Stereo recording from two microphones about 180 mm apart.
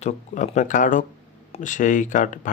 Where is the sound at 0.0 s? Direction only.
45° left (ahead or behind).